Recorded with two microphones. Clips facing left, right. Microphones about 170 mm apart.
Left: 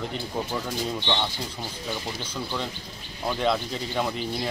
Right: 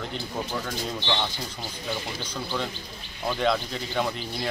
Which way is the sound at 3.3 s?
Centre (ahead or behind).